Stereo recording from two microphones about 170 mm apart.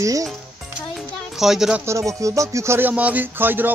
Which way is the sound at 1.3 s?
Centre (ahead or behind).